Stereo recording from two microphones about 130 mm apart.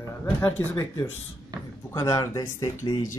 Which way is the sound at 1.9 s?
25° left (ahead or behind).